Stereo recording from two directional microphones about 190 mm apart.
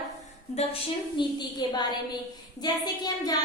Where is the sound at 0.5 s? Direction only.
25° left (ahead or behind).